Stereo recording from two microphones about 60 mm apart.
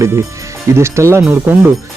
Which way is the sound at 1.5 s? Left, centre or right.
Right.